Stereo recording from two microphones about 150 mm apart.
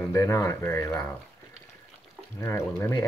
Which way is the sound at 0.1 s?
20° left (ahead or behind).